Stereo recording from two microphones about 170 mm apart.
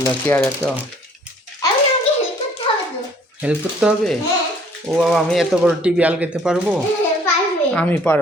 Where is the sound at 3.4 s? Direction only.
5° right (ahead or behind).